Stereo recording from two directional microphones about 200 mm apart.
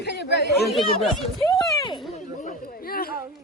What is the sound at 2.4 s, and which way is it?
Chatter, 45° left (ahead or behind).